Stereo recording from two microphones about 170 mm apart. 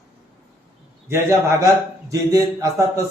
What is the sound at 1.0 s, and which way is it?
A man's voice, 15° right (ahead or behind).